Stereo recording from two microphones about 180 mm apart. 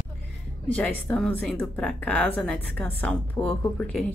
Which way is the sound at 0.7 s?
10° left (ahead or behind).